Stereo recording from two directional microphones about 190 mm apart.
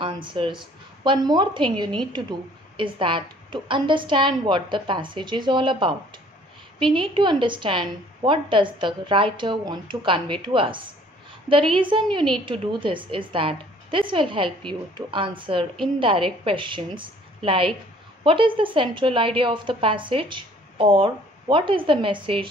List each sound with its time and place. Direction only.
0.0 s a woman's voice: 25° right (ahead or behind)